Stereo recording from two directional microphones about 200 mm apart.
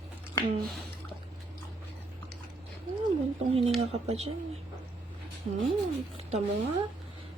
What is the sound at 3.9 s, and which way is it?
Speech, 30° right (ahead or behind).